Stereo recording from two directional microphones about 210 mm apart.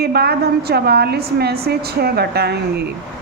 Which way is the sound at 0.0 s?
50° right (ahead or behind).